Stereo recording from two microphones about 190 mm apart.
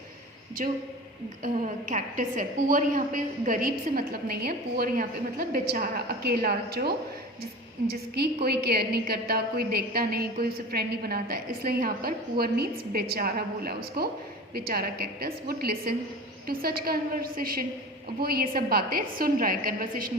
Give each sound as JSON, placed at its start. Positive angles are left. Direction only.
{"t": 0.6, "sound": "a woman's voice", "side_deg": -45}